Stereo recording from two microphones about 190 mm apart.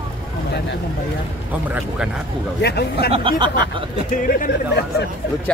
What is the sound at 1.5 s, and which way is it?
Speech, 10° right (ahead or behind).